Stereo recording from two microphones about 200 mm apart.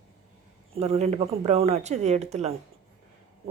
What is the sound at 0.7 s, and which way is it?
Speech, 30° right (ahead or behind).